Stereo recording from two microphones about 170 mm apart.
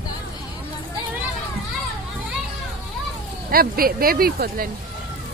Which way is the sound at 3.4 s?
60° right (ahead or behind).